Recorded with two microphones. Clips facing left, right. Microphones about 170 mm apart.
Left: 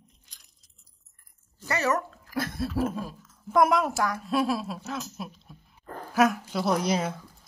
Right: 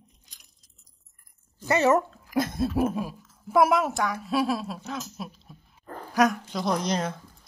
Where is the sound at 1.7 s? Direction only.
25° right (ahead or behind); by 7.1 s 5° left (ahead or behind).